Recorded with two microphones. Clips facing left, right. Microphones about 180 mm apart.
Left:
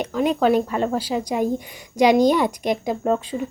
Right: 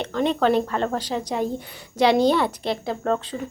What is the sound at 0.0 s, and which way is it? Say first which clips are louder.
Speech: left 2 dB; 10° left (ahead or behind).